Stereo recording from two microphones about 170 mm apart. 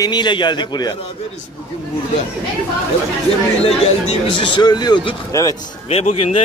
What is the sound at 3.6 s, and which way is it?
A man's voice, 35° left (ahead or behind).